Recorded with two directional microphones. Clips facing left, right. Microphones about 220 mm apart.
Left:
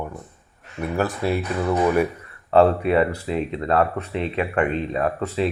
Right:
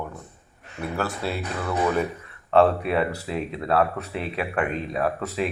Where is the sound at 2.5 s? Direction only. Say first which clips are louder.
Left 3 dB; centre (ahead or behind).